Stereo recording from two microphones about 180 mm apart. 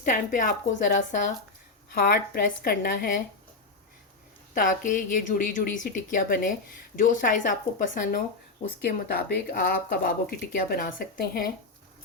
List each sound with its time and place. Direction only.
0.0 s speech: 45° left (ahead or behind)
1.9 s speech: 55° left (ahead or behind)
4.5 s speech: 50° left (ahead or behind)